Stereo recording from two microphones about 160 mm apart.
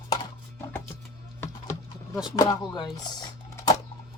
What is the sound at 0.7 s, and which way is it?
Music, 15° left (ahead or behind).